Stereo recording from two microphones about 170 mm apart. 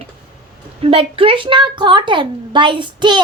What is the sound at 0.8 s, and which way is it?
A child's voice, 35° right (ahead or behind).